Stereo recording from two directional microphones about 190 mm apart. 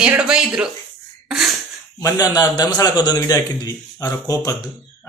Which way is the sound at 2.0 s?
20° left (ahead or behind).